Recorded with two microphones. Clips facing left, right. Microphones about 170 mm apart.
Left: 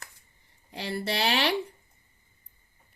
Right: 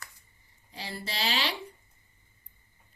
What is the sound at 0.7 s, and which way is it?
Speech, 60° left (ahead or behind).